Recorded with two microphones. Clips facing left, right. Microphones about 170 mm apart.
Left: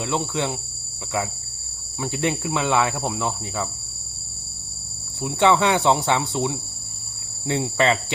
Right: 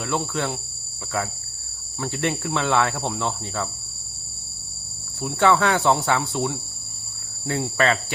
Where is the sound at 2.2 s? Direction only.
10° left (ahead or behind).